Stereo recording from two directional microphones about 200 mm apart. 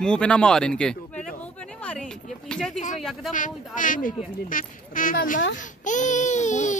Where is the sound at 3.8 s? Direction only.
40° left (ahead or behind).